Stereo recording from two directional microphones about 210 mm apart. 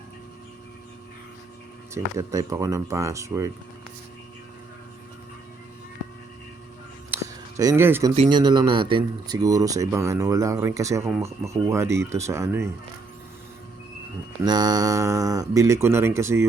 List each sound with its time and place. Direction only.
1.9 s speech: 15° right (ahead or behind)
7.1 s a sound: 15° right (ahead or behind)
8.1 s speech: 25° right (ahead or behind)
14.4 s speech: 20° right (ahead or behind)